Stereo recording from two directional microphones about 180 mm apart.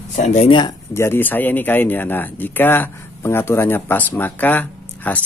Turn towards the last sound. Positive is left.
turn(degrees=10)  # may be behind; listen again after turning